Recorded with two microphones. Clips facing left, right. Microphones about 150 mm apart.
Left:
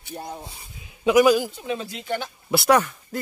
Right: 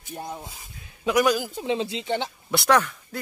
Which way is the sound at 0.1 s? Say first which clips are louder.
Even; centre (ahead or behind).